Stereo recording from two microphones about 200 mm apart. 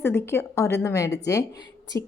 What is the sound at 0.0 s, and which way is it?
A woman's voice, 10° left (ahead or behind).